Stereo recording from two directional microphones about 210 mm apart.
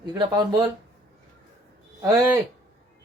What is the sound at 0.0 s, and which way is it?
Speech, 20° right (ahead or behind).